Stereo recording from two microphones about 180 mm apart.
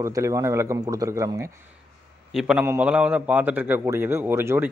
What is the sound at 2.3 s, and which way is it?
A man's voice, 5° right (ahead or behind).